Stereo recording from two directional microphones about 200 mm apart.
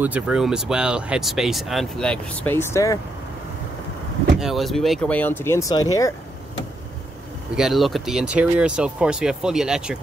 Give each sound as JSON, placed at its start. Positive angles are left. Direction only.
{"t": 0.0, "sound": "speech", "side_deg": -5}
{"t": 4.4, "sound": "speech", "side_deg": 0}
{"t": 7.5, "sound": "speech", "side_deg": 0}